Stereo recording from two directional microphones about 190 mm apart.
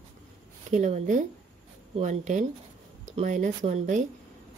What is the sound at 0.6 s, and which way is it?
Speech, 40° right (ahead or behind).